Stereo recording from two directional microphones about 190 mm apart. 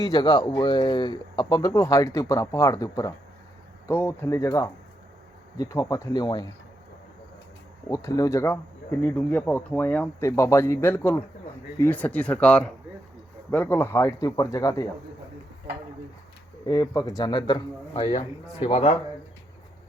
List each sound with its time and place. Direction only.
0.0 s speech: 20° left (ahead or behind)
7.9 s speech: 15° left (ahead or behind)
16.6 s speech: 20° left (ahead or behind)